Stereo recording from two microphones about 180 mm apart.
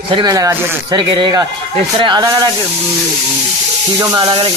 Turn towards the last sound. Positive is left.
turn(degrees=-30)  # may be behind; listen again after turning